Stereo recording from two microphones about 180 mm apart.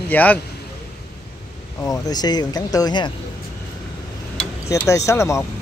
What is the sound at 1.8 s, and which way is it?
Speech, 20° left (ahead or behind).